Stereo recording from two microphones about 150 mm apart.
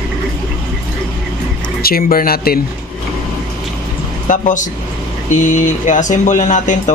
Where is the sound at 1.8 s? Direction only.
80° left.